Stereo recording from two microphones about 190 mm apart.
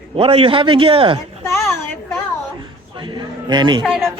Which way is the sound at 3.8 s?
Centre (ahead or behind).